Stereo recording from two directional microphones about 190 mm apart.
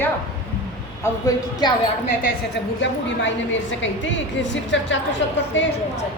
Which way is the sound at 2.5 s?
75° left (ahead or behind).